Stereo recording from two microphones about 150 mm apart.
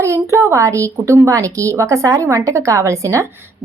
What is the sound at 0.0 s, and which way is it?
Speech, 20° right (ahead or behind).